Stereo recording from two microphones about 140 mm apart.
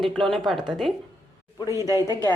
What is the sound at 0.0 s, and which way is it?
Speech, centre (ahead or behind).